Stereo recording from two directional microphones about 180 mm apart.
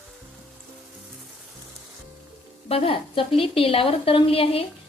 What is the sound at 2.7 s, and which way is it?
A woman's voice, 30° left (ahead or behind).